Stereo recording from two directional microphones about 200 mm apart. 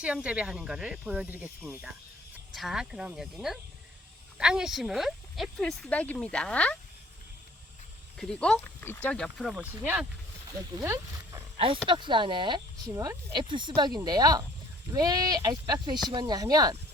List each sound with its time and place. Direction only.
0.0 s speech: 5° right (ahead or behind)
8.2 s speech: 5° left (ahead or behind)
10.8 s speech: 15° right (ahead or behind)